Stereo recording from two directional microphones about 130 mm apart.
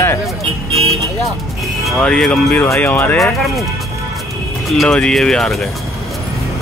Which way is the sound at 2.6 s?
20° left (ahead or behind).